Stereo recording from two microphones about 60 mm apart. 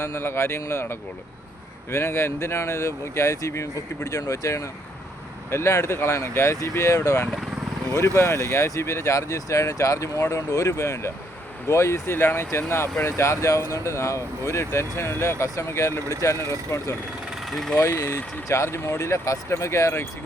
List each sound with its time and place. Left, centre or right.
0.0 s speech: left
5.5 s speech: left
13.1 s speech: left
17.4 s engine: centre
17.9 s speech: left
18.4 s speech: left